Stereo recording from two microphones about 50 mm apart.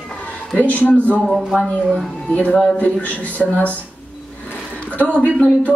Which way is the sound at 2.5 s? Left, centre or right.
Centre.